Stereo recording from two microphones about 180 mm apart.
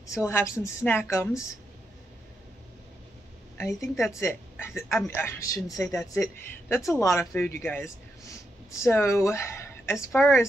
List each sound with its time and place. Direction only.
0.0 s speech: 15° left (ahead or behind)
3.5 s a woman's voice: 15° left (ahead or behind)